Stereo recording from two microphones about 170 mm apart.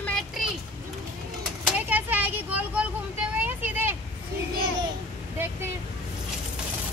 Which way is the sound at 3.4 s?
10° right (ahead or behind).